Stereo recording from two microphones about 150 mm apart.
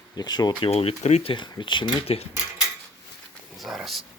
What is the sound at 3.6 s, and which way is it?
Speech, centre (ahead or behind).